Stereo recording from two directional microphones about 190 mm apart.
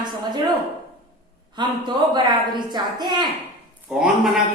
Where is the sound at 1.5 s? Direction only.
25° right (ahead or behind).